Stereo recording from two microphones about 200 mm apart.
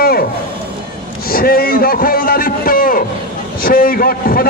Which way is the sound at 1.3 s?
50° left (ahead or behind).